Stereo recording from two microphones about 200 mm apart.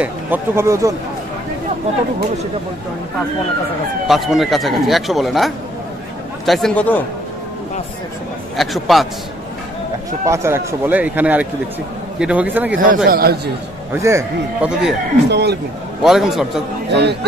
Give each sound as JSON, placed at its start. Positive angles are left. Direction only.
{"t": 0.0, "sound": "a man's voice", "side_deg": -10}
{"t": 4.1, "sound": "speech", "side_deg": 0}
{"t": 8.5, "sound": "speech", "side_deg": 0}
{"t": 10.2, "sound": "a man's voice", "side_deg": -15}
{"t": 12.7, "sound": "a man's voice", "side_deg": -45}
{"t": 13.9, "sound": "a man's voice", "side_deg": -15}
{"t": 15.2, "sound": "speech", "side_deg": -55}
{"t": 16.0, "sound": "speech", "side_deg": 0}
{"t": 16.9, "sound": "speech", "side_deg": -55}